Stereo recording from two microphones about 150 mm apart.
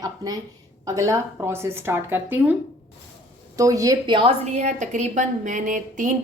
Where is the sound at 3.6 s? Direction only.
25° right (ahead or behind).